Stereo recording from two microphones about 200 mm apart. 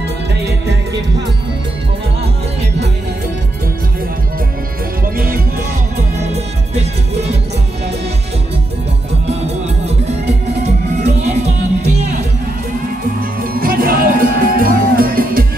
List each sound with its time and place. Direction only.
5.1 s music: 45° right (ahead or behind)
6.3 s music: 35° right (ahead or behind)
9.8 s music: 35° right (ahead or behind)
13.5 s music: 45° right (ahead or behind)